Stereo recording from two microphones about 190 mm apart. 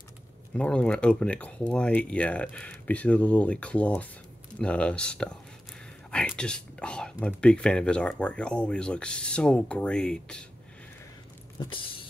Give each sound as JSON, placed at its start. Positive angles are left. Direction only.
{"t": 0.6, "sound": "speech", "side_deg": 5}
{"t": 11.6, "sound": "vehicle", "side_deg": 25}